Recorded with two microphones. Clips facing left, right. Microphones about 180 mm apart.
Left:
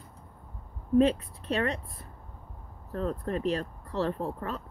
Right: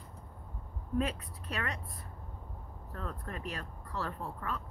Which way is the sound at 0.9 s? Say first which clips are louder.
Left 11 dB; 30° left (ahead or behind).